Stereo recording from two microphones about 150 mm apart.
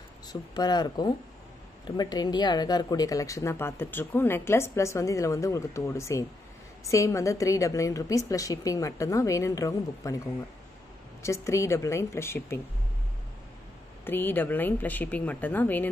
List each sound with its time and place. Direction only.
0.3 s speech: 30° left (ahead or behind)
14.0 s a woman's voice: 15° left (ahead or behind)